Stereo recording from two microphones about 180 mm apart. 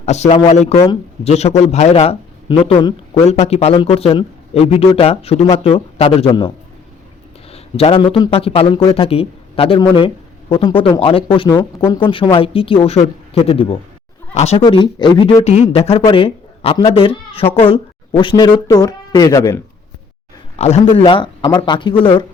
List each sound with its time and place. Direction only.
0.0 s speech: 40° left (ahead or behind)
7.5 s speech: 35° left (ahead or behind)
11.8 s speech: 10° left (ahead or behind)
12.0 s speech: 25° left (ahead or behind)
14.6 s speech: 25° left (ahead or behind)
15.4 s speech: 35° left (ahead or behind); by 19.6 s 15° left (ahead or behind)
20.6 s speech: 35° left (ahead or behind)